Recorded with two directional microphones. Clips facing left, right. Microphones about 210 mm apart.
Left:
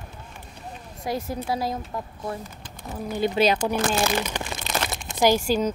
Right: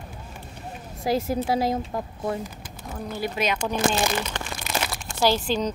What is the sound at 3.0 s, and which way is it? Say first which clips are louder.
Speech: left 5 dB; 15° left (ahead or behind).